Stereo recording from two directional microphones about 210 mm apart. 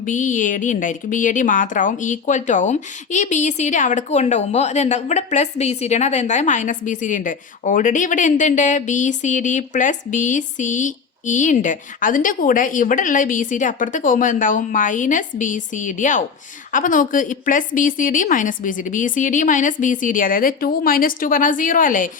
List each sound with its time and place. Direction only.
0.0 s a woman's voice: 35° left (ahead or behind)